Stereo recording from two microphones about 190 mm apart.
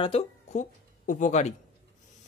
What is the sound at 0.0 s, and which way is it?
Speech, 35° left (ahead or behind).